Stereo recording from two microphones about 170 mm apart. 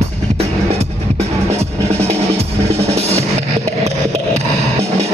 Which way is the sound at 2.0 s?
40° right (ahead or behind).